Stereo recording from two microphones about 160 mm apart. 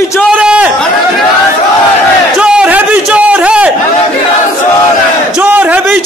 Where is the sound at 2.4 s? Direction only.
5° right (ahead or behind).